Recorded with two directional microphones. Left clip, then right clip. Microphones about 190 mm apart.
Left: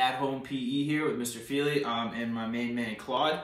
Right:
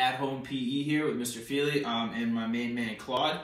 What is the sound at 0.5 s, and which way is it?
Speech, 45° left (ahead or behind).